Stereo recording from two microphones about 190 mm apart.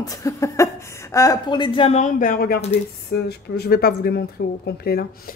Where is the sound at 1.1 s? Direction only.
15° left (ahead or behind).